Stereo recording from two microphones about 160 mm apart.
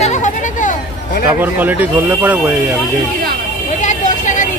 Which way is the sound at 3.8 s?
50° left (ahead or behind).